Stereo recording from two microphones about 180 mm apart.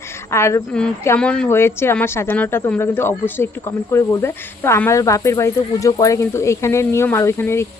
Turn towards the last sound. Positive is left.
turn(degrees=15)  # may be behind; listen again after turning